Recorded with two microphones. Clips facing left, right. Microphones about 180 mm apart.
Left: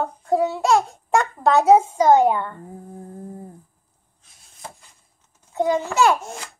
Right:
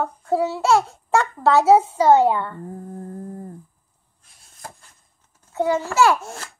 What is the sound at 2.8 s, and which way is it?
Mantra, 5° left (ahead or behind).